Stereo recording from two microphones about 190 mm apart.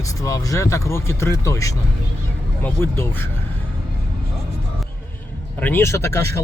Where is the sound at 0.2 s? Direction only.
15° left (ahead or behind).